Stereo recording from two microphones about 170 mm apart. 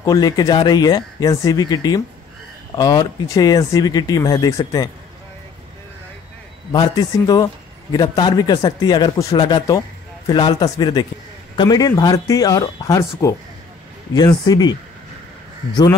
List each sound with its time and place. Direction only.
0.0 s speech: 20° left (ahead or behind)
6.7 s speech: 25° left (ahead or behind)